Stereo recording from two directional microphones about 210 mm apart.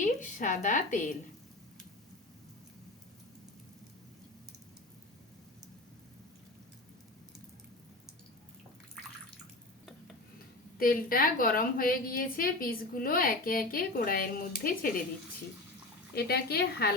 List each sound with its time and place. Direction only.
0.0 s a woman's voice: 35° left (ahead or behind)
10.8 s a woman's voice: 45° left (ahead or behind)
16.1 s a woman's voice: 50° left (ahead or behind)